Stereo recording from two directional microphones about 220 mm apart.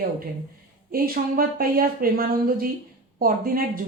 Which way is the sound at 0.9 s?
40° right (ahead or behind).